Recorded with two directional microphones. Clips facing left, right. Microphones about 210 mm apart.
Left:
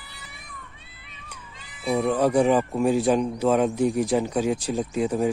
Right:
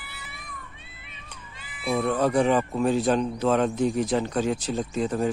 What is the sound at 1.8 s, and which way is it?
Speech, 15° left (ahead or behind).